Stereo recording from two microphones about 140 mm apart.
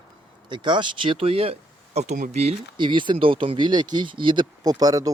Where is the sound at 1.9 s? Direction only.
60° right (ahead or behind).